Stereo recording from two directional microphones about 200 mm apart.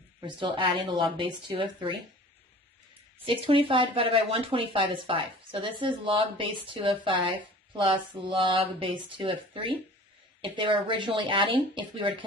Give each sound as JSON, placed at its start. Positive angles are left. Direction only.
{"t": 0.2, "sound": "speech", "side_deg": -25}
{"t": 3.2, "sound": "speech", "side_deg": -25}